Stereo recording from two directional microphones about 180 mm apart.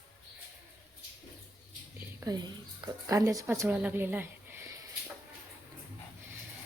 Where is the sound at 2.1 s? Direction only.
20° right (ahead or behind).